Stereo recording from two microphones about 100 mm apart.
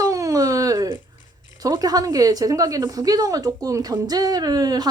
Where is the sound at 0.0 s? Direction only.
35° right (ahead or behind).